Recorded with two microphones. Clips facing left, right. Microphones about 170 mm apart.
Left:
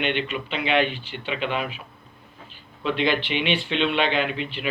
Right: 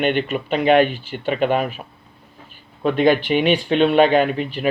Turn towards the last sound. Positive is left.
turn(degrees=-45)  # may be behind; listen again after turning